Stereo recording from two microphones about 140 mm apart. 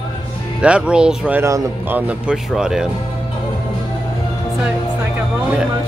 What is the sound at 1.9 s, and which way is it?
Speech, 10° right (ahead or behind).